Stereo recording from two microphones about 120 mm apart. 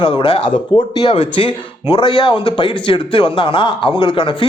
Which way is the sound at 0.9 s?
40° left (ahead or behind).